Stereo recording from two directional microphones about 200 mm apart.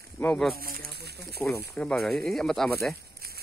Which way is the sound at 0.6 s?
50° right (ahead or behind).